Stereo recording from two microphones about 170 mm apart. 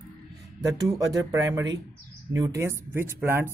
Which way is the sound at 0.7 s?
20° right (ahead or behind).